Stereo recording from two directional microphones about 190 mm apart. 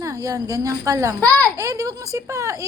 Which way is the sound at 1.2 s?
10° left (ahead or behind).